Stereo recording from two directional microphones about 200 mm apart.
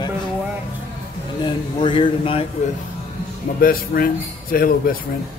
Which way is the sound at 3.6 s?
45° left (ahead or behind).